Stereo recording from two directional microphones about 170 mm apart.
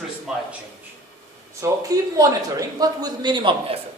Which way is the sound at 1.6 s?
20° right (ahead or behind).